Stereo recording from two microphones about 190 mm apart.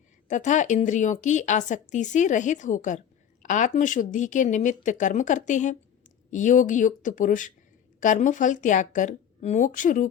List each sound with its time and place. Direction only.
0.3 s a woman's voice: 40° left (ahead or behind)